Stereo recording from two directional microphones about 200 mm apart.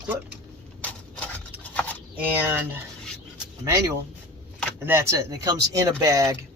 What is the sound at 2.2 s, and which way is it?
Speech, 10° right (ahead or behind).